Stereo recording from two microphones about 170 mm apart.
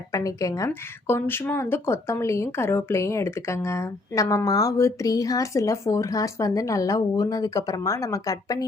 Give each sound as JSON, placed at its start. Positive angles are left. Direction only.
{"t": 0.1, "sound": "a woman's voice", "side_deg": 20}